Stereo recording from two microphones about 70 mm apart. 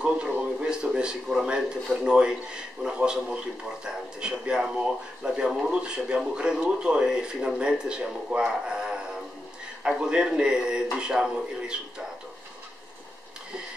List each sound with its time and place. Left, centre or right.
0.0 s speech: centre